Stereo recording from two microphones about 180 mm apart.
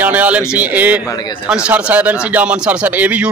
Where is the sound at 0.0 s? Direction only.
10° right (ahead or behind).